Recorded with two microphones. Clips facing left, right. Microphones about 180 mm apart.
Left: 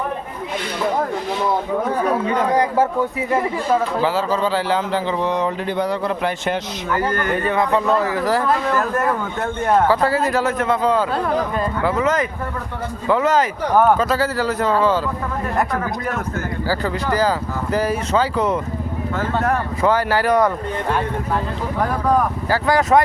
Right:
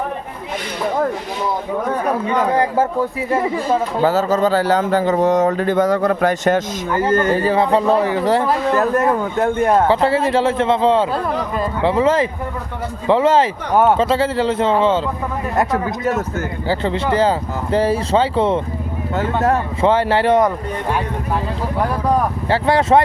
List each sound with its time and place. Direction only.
4.0 s speech: 40° right (ahead or behind)
6.9 s a man's voice: 25° right (ahead or behind)
22.4 s a man's voice: 25° right (ahead or behind)